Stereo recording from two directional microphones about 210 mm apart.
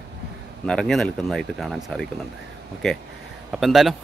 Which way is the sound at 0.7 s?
5° left (ahead or behind).